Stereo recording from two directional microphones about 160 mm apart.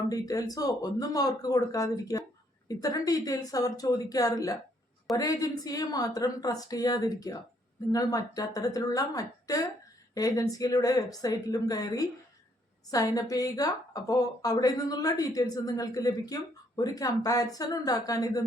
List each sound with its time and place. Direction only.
0.1 s a woman's voice: 20° left (ahead or behind)